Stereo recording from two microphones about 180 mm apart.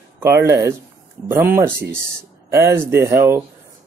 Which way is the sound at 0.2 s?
15° right (ahead or behind).